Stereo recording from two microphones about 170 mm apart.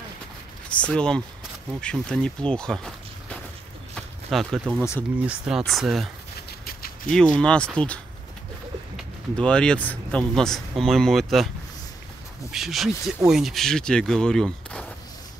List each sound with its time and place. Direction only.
0.7 s speech: 5° left (ahead or behind)
3.9 s a sound: centre (ahead or behind)
5.2 s speech: 5° right (ahead or behind)
6.6 s a sound: 60° left (ahead or behind)
7.1 s speech: 5° left (ahead or behind)
12.4 s speech: centre (ahead or behind)